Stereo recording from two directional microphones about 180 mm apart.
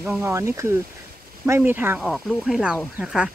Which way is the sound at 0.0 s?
10° right (ahead or behind).